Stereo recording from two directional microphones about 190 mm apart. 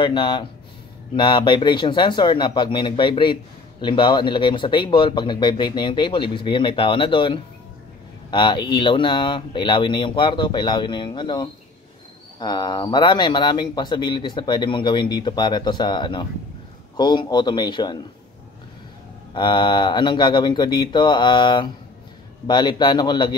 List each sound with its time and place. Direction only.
0.0 s speech: 25° left (ahead or behind)
19.3 s speech: 25° left (ahead or behind)